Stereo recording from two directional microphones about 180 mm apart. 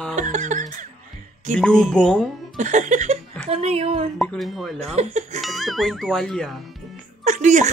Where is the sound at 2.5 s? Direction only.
45° right (ahead or behind).